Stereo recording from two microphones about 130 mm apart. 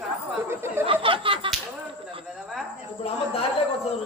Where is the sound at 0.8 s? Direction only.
45° right (ahead or behind).